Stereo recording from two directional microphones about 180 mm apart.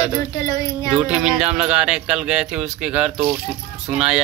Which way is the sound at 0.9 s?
5° right (ahead or behind).